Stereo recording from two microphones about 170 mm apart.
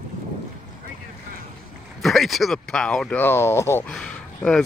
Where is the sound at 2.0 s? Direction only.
Centre (ahead or behind).